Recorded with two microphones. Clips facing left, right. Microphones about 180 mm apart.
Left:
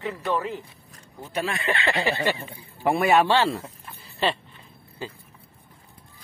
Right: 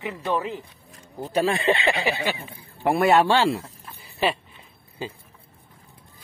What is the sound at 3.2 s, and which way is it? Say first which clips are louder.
A man's voice: right 1 dB; 10° right (ahead or behind).